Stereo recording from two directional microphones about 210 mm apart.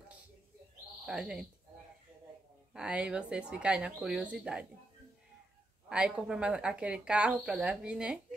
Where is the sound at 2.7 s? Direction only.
5° right (ahead or behind).